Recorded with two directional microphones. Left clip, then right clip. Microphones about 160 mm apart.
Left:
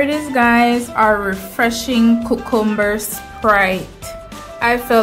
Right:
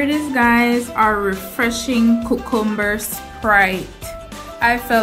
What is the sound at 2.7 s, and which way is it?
A woman's voice, 10° left (ahead or behind).